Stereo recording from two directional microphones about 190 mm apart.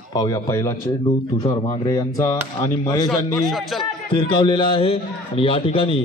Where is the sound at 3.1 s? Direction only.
Centre (ahead or behind).